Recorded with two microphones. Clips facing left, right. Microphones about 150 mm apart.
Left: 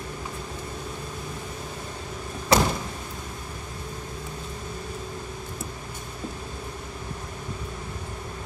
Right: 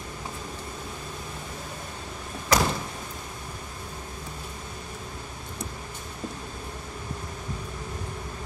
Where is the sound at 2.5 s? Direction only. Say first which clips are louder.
Left 3 dB; 30° left (ahead or behind).